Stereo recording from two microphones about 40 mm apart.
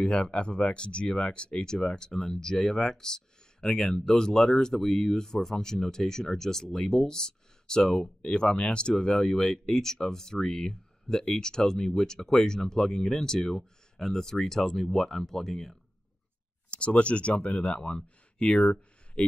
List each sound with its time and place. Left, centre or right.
0.0 s speech: left
8.2 s speech: left; by 15.8 s centre
16.7 s speech: left